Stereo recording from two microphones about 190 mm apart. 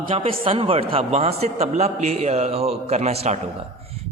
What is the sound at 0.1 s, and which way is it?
Mantra, 30° right (ahead or behind).